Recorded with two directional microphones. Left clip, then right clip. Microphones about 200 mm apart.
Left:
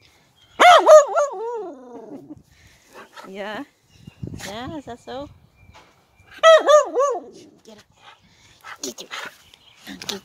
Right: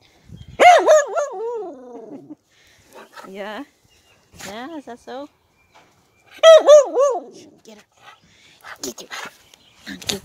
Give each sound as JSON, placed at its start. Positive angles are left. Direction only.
{"t": 0.6, "sound": "dog", "side_deg": 10}
{"t": 2.9, "sound": "dog", "side_deg": 20}
{"t": 3.3, "sound": "speech", "side_deg": -5}
{"t": 6.2, "sound": "dog", "side_deg": -15}
{"t": 8.6, "sound": "speech", "side_deg": -20}